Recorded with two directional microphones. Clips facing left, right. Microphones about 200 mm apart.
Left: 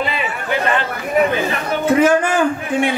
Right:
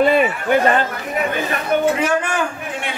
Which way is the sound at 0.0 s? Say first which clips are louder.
Right 8 dB; 50° right (ahead or behind).